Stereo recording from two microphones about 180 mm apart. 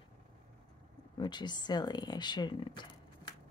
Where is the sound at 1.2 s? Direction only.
25° left (ahead or behind).